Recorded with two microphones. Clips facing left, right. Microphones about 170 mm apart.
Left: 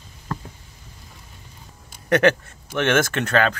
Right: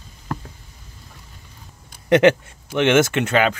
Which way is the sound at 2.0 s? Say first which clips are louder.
Right 4 dB; 20° right (ahead or behind).